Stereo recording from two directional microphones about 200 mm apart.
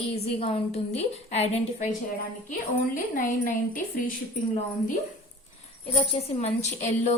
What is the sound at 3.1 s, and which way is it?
A woman's voice, 45° left (ahead or behind).